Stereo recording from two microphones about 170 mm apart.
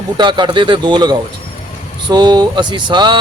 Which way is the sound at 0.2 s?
25° right (ahead or behind).